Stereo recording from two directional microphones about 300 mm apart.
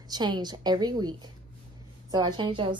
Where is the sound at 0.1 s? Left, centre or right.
Centre.